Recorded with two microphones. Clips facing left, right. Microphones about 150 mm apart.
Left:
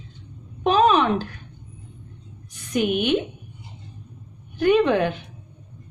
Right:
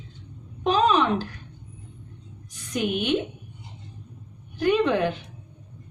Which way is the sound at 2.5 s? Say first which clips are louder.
Left 4 dB; 60° left (ahead or behind).